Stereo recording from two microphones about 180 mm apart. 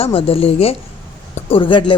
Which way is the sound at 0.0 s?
30° left (ahead or behind).